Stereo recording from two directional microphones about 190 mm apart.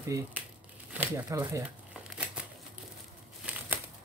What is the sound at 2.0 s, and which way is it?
Crumpling, 5° right (ahead or behind).